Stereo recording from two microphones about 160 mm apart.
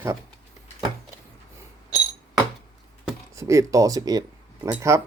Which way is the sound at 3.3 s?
20° right (ahead or behind).